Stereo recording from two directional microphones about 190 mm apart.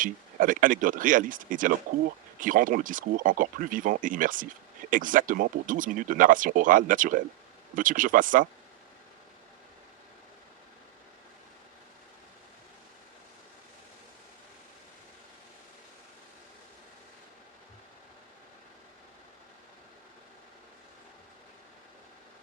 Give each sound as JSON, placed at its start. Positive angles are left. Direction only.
{"t": 0.0, "sound": "speech", "side_deg": -45}